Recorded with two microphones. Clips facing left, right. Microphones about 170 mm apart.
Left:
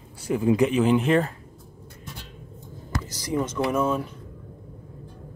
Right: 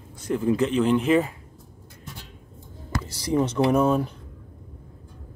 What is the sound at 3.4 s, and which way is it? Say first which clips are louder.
Speech: right 4 dB; 35° right (ahead or behind).